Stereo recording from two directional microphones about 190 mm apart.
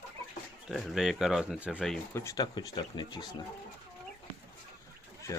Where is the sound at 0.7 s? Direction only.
Centre (ahead or behind).